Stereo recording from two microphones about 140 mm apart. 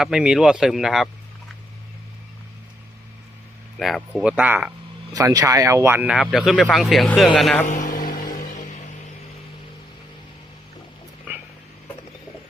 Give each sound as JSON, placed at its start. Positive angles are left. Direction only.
{"t": 0.0, "sound": "speech", "side_deg": -5}
{"t": 3.8, "sound": "speech", "side_deg": 0}
{"t": 5.1, "sound": "speech", "side_deg": -25}
{"t": 7.7, "sound": "music", "side_deg": 65}